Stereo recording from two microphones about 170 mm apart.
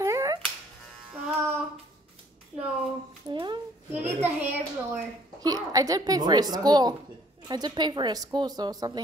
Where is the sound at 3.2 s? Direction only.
25° right (ahead or behind).